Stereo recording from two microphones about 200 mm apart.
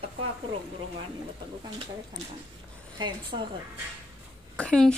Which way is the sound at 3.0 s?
20° right (ahead or behind).